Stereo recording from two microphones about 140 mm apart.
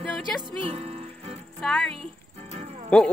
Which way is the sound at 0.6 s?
40° right (ahead or behind).